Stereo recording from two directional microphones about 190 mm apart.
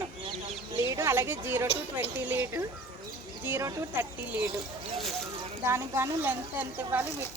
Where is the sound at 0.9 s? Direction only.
15° right (ahead or behind).